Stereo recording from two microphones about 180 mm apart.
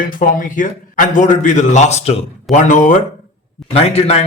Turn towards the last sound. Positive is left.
turn(degrees=35)  # may be behind; listen again after turning